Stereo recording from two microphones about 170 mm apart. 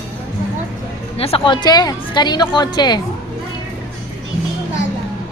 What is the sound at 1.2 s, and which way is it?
A woman's voice, 35° left (ahead or behind).